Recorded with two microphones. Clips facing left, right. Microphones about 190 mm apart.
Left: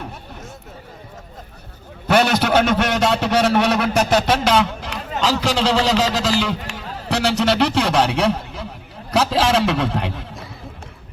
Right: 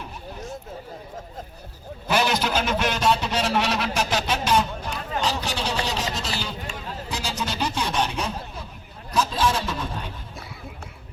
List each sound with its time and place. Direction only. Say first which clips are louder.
2.0 s a man's voice: left 6 dB; 65° left (ahead or behind); by 8.6 s 80° left
9.1 s a man's voice: left 6 dB; 90° left